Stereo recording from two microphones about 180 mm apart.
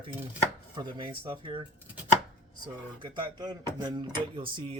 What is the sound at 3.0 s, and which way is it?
Speech, 25° right (ahead or behind).